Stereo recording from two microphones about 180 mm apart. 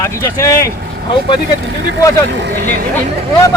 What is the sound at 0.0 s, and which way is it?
Speech, 15° left (ahead or behind).